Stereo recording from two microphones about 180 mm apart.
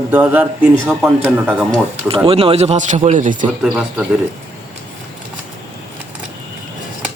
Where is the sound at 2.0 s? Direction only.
30° right (ahead or behind).